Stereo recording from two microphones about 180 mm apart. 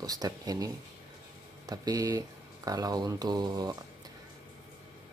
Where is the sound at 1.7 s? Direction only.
20° right (ahead or behind).